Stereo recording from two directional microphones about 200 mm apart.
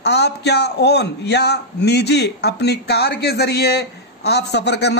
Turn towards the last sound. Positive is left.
turn(degrees=55)  # may be behind; listen again after turning